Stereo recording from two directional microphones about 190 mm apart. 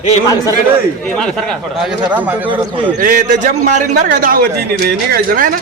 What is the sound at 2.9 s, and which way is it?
A man's voice, 45° right (ahead or behind).